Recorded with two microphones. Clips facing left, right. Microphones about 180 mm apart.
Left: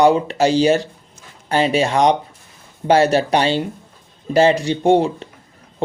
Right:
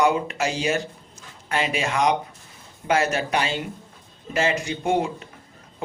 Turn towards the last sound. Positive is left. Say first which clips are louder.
# left 8 dB
turn(degrees=30)  # may be behind; listen again after turning